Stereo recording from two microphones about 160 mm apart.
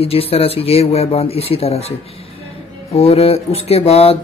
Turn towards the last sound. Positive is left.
turn(degrees=40)  # may be behind; listen again after turning